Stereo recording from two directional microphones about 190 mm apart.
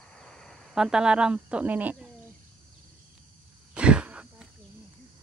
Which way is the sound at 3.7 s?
5° right (ahead or behind).